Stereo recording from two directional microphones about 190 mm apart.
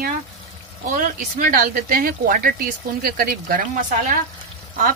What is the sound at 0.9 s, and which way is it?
Speech, 45° right (ahead or behind).